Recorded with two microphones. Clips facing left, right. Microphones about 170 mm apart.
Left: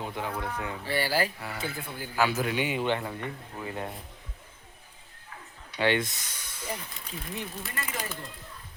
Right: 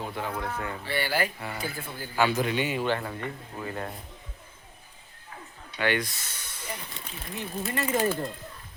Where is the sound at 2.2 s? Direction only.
5° left (ahead or behind).